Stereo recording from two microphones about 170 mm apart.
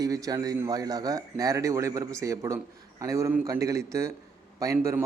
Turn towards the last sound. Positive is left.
turn(degrees=-15)  # may be behind; listen again after turning